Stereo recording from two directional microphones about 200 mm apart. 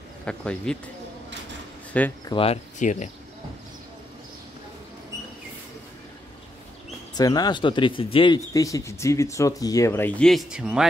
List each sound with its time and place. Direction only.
0.2 s speech: 5° left (ahead or behind)
1.9 s speech: 5° left (ahead or behind)
2.2 s speech: 25° left (ahead or behind)
7.2 s speech: 20° left (ahead or behind); by 10.9 s 5° right (ahead or behind)